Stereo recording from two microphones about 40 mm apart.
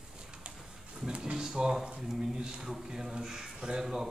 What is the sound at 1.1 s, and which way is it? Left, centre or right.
A man's voice, right.